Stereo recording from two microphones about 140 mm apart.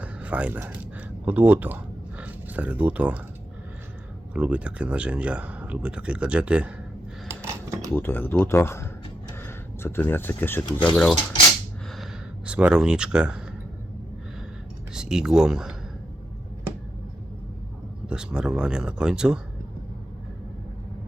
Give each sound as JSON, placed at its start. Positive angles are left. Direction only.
{"t": 0.0, "sound": "a sound", "side_deg": -10}
{"t": 1.2, "sound": "speech", "side_deg": -10}
{"t": 4.4, "sound": "speech", "side_deg": -10}
{"t": 7.3, "sound": "a sound", "side_deg": -20}
{"t": 7.9, "sound": "speech", "side_deg": 15}
{"t": 12.5, "sound": "speech", "side_deg": -10}
{"t": 14.9, "sound": "speech", "side_deg": -5}
{"t": 18.1, "sound": "speech", "side_deg": -5}